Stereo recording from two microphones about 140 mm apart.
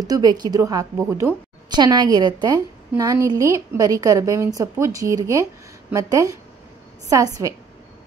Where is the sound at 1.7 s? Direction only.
30° right (ahead or behind).